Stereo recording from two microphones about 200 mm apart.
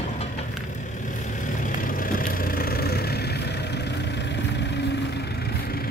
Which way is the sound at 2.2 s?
45° left (ahead or behind).